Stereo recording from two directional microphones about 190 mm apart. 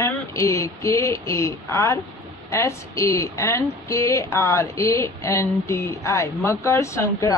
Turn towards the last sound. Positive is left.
turn(degrees=15)  # may be behind; listen again after turning